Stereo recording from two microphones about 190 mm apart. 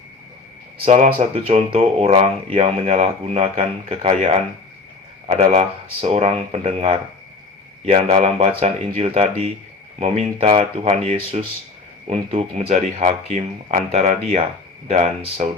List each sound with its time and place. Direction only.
0.9 s speech: 40° right (ahead or behind)
8.1 s speech: 35° right (ahead or behind)